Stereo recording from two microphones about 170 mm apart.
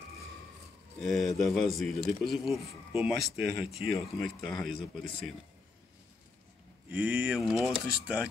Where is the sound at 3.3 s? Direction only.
70° right (ahead or behind).